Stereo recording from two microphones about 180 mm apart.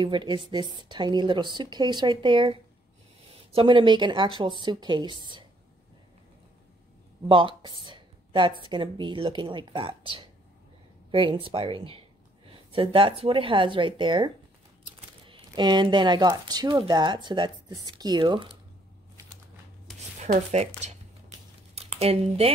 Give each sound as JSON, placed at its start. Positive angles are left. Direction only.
{"t": 0.0, "sound": "speech", "side_deg": -25}
{"t": 7.2, "sound": "speech", "side_deg": -30}
{"t": 20.2, "sound": "speech", "side_deg": -40}